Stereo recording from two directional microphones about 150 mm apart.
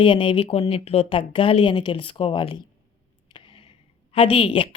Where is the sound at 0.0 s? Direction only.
35° left (ahead or behind).